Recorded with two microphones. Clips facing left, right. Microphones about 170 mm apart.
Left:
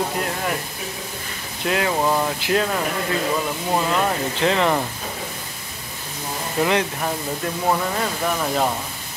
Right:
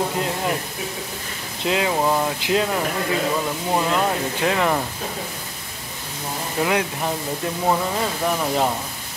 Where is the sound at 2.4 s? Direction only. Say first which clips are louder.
Even; 15° right (ahead or behind).